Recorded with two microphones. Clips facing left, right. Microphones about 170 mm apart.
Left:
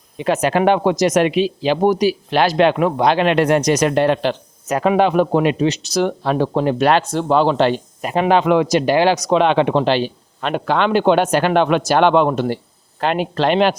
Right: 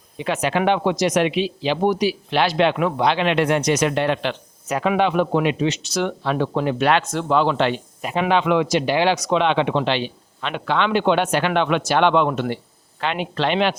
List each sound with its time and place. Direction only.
0.2 s speech: 40° left (ahead or behind)